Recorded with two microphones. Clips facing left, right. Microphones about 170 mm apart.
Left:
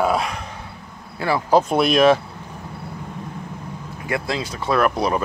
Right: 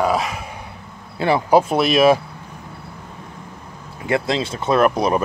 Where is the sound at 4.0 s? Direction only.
25° right (ahead or behind).